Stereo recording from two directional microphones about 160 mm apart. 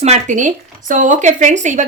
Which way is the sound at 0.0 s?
45° right (ahead or behind).